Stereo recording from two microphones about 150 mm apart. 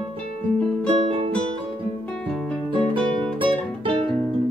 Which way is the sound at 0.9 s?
35° right (ahead or behind).